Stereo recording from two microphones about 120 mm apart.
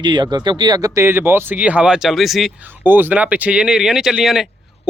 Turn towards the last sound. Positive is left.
turn(degrees=-5)  # may be behind; listen again after turning